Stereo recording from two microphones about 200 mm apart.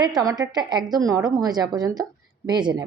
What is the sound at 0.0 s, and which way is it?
A woman's voice, 20° right (ahead or behind).